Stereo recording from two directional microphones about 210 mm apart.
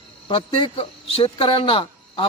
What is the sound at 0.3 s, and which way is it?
Speech, 25° left (ahead or behind).